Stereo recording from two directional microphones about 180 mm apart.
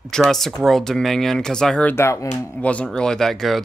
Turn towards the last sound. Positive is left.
turn(degrees=0)  # may be behind; listen again after turning